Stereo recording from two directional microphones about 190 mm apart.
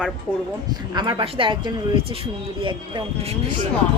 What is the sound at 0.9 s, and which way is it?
Speech, 25° right (ahead or behind).